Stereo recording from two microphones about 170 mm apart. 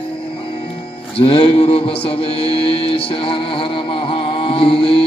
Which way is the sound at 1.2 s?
30° left (ahead or behind).